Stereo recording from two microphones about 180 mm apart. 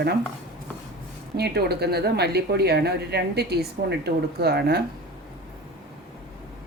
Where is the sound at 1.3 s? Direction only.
65° right (ahead or behind).